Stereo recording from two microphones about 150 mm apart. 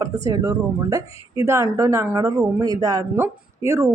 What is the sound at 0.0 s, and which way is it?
Speech, 20° right (ahead or behind).